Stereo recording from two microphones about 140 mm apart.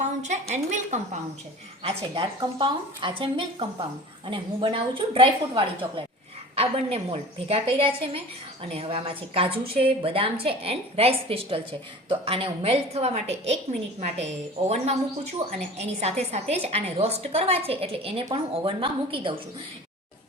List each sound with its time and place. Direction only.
0.0 s a woman's voice: 55° right (ahead or behind)
1.8 s a woman's voice: 40° right (ahead or behind)